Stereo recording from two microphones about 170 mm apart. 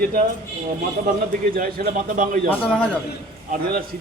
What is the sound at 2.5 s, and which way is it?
Speech, 5° left (ahead or behind).